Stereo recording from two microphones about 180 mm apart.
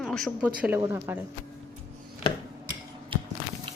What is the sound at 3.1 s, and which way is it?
Biting, 30° right (ahead or behind).